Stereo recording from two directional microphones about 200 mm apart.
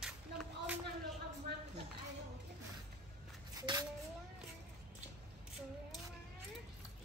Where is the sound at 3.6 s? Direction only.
20° right (ahead or behind).